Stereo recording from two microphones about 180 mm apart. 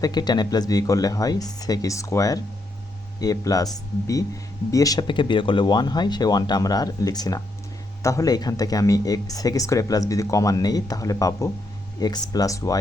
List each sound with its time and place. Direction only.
0.0 s speech: 20° left (ahead or behind)